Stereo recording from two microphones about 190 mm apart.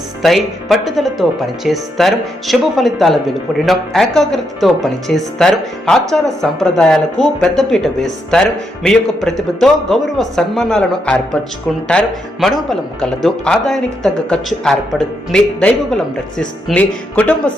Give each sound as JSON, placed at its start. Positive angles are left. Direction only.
{"t": 0.2, "sound": "speech", "side_deg": 0}